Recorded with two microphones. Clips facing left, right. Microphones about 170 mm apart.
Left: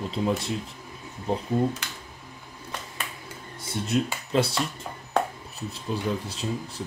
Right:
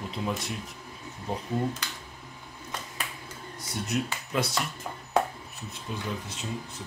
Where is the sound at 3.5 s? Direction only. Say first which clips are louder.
Left 5 dB; 30° left (ahead or behind).